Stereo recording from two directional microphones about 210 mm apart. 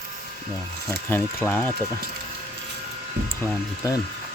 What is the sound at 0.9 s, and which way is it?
Speech, 10° left (ahead or behind).